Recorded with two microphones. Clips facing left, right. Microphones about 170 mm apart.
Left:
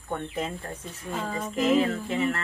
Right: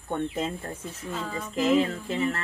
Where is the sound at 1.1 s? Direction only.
45° left (ahead or behind).